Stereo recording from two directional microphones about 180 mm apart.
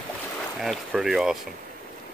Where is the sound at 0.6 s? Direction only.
Centre (ahead or behind).